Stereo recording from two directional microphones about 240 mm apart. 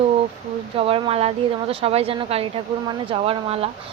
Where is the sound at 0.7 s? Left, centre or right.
Right.